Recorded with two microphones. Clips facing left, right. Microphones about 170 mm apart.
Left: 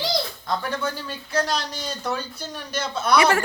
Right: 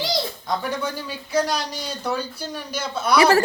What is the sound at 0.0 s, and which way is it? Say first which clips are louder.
Speech: right 1 dB; 15° right (ahead or behind).